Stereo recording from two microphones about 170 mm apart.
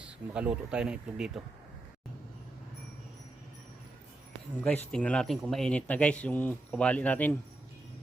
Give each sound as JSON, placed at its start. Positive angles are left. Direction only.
{"t": 0.0, "sound": "speech", "side_deg": -5}
{"t": 4.6, "sound": "speech", "side_deg": 5}